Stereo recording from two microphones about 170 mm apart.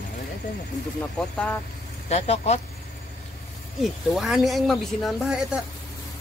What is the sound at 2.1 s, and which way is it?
Speech, 40° left (ahead or behind).